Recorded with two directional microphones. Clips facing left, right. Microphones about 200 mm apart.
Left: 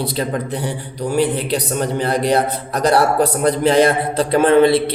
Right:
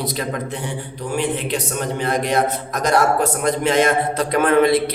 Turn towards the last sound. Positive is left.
turn(degrees=30)  # may be behind; listen again after turning